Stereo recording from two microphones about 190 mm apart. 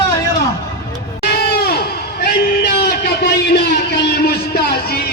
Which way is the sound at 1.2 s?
55° left (ahead or behind).